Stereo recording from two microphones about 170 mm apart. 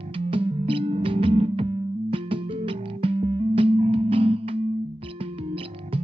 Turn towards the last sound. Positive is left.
turn(degrees=-35)  # may be behind; listen again after turning